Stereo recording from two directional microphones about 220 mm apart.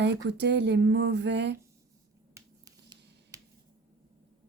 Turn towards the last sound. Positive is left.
turn(degrees=-15)  # may be behind; listen again after turning